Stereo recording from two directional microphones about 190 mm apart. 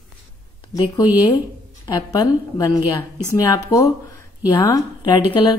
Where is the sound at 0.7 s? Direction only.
20° left (ahead or behind).